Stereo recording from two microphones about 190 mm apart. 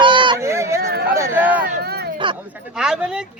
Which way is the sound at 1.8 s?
55° right (ahead or behind).